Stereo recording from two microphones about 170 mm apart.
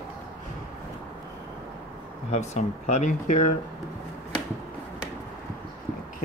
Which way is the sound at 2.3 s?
40° left (ahead or behind).